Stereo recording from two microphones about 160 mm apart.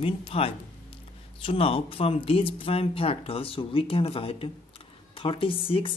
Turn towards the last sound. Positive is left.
turn(degrees=35)  # may be behind; listen again after turning